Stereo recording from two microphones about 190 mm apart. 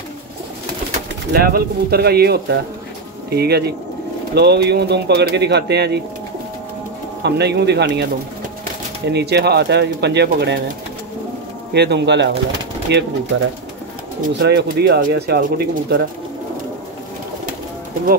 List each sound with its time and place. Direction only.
1.3 s speech: 55° right (ahead or behind)
7.2 s speech: 60° right (ahead or behind)
9.1 s speech: 60° right (ahead or behind)
11.7 s speech: 60° right (ahead or behind)
14.2 s speech: 60° right (ahead or behind)